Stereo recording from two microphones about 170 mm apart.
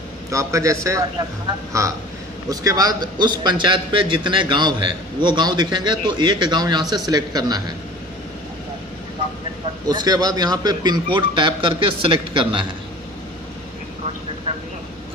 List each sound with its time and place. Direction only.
0.3 s a man's voice: 20° right (ahead or behind)
9.8 s a man's voice: 25° right (ahead or behind)